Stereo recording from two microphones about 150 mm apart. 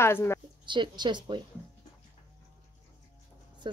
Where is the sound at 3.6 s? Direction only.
30° right (ahead or behind).